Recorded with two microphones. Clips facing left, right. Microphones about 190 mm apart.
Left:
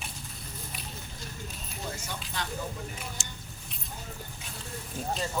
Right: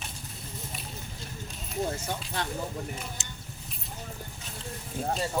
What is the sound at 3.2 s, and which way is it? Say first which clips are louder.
Keys jangling: even; 20° right (ahead or behind).